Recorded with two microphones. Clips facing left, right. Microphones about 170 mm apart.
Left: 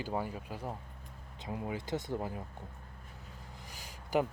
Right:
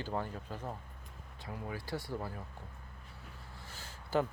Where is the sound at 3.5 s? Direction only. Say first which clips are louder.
Left 1 dB; 15° left (ahead or behind).